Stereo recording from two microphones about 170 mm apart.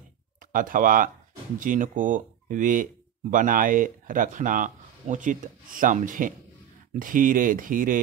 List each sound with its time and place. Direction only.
0.5 s speech: 50° right (ahead or behind)